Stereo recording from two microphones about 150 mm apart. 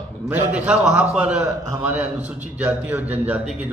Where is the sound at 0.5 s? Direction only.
10° right (ahead or behind).